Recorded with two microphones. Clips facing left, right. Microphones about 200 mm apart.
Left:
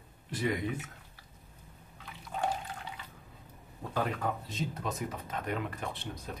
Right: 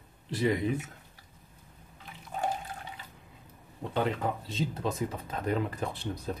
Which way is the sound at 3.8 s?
25° right (ahead or behind).